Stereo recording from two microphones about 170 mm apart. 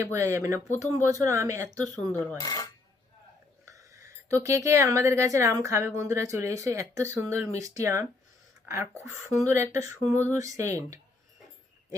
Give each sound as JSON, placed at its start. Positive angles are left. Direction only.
{"t": 0.0, "sound": "a woman's voice", "side_deg": -15}
{"t": 2.4, "sound": "dishes", "side_deg": 20}
{"t": 3.7, "sound": "a sound", "side_deg": -20}
{"t": 4.4, "sound": "a woman's voice", "side_deg": -15}